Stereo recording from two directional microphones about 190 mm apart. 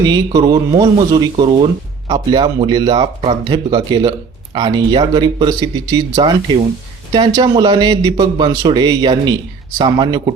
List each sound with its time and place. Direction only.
0.0 s speech: 20° right (ahead or behind)